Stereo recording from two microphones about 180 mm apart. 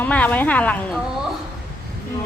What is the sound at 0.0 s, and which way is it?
Speech, 10° left (ahead or behind).